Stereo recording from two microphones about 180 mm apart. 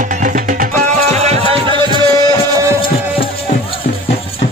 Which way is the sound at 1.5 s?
25° right (ahead or behind).